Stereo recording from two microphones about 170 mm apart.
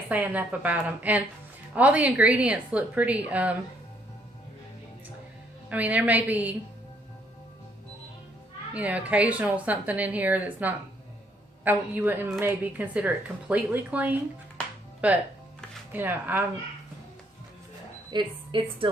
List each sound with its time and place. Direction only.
0.1 s a woman's voice: 10° right (ahead or behind)
5.6 s a woman's voice: 10° right (ahead or behind)
8.7 s a woman's voice: 10° right (ahead or behind)
18.1 s a woman's voice: 30° right (ahead or behind)